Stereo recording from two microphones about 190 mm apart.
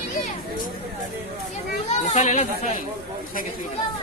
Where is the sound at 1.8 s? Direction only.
35° left (ahead or behind).